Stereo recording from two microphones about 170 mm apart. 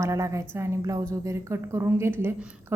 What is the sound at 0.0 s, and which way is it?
A woman's voice, 20° right (ahead or behind).